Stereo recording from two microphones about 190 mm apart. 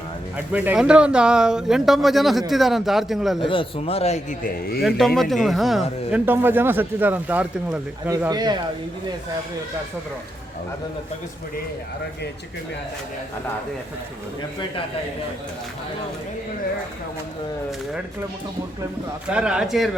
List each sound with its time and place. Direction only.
0.3 s speech: 10° right (ahead or behind)
3.4 s speech: 25° left (ahead or behind)
4.4 s a man's voice: 50° left (ahead or behind)
4.8 s a man's voice: centre (ahead or behind)
8.1 s a man's voice: 20° right (ahead or behind)
19.3 s speech: 5° right (ahead or behind)